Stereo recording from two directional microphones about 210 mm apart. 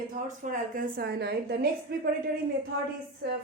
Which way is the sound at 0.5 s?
40° right (ahead or behind).